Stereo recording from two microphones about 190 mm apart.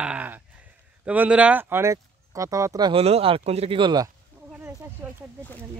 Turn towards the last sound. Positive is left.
turn(degrees=-20)  # may be behind; listen again after turning